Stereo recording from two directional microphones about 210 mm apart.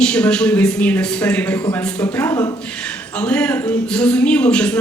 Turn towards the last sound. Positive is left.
turn(degrees=5)  # may be behind; listen again after turning